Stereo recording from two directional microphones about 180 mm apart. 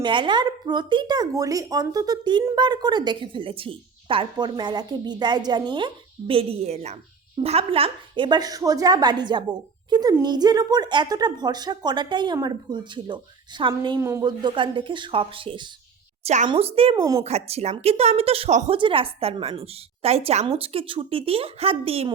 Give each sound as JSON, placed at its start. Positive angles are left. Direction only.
{"t": 0.0, "sound": "speech", "side_deg": -25}
{"t": 16.2, "sound": "a woman's voice", "side_deg": -40}
{"t": 17.0, "sound": "speech", "side_deg": -20}
{"t": 17.2, "sound": "speech", "side_deg": -35}